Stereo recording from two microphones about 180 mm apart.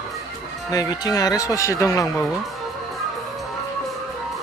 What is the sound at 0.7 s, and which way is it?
Speech, 20° left (ahead or behind).